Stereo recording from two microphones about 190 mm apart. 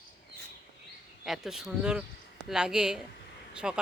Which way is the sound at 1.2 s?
Centre (ahead or behind).